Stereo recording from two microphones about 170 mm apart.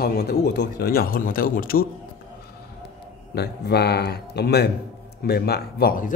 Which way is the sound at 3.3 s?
75° left (ahead or behind).